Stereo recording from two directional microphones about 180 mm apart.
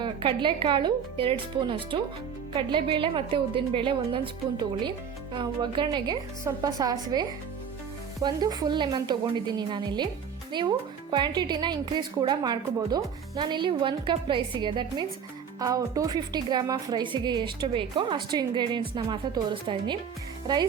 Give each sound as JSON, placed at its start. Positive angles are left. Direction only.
{"t": 0.0, "sound": "speech", "side_deg": -25}